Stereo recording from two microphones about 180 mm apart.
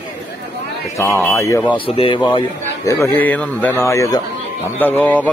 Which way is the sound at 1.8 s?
30° left (ahead or behind).